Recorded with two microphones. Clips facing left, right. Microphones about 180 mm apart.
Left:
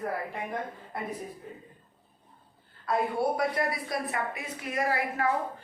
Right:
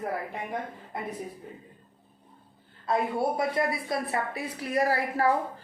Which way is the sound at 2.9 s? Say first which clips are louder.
Right 1 dB; 25° right (ahead or behind).